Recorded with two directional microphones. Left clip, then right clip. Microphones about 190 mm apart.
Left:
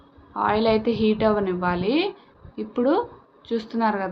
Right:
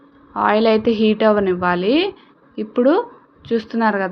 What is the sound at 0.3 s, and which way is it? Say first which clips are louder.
A woman's voice: right 6 dB; 30° right (ahead or behind).